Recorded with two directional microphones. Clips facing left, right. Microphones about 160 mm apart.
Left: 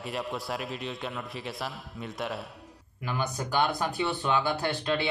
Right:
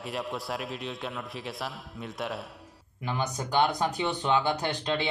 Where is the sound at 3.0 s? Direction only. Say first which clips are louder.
Even; 20° right (ahead or behind).